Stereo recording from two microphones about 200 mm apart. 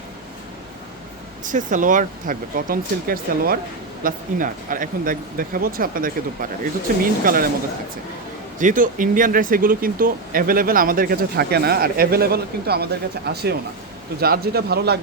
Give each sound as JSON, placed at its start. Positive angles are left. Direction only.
{"t": 1.5, "sound": "speech", "side_deg": -40}
{"t": 8.5, "sound": "speech", "side_deg": -40}